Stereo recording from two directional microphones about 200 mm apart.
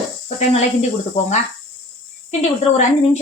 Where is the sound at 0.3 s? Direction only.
35° left (ahead or behind).